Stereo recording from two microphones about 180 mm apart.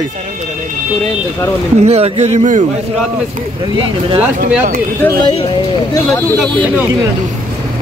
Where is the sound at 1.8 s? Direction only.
35° right (ahead or behind).